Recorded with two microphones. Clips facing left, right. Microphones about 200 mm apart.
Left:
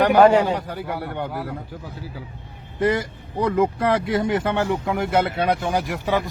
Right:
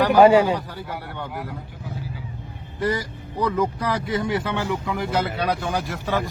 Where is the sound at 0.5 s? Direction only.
45° left (ahead or behind).